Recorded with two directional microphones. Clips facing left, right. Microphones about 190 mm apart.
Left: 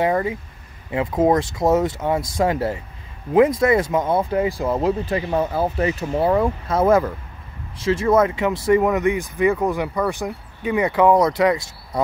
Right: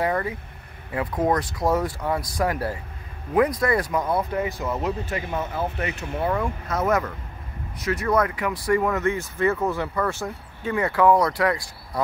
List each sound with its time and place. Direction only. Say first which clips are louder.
0.0 s speech: left 5 dB; 20° left (ahead or behind)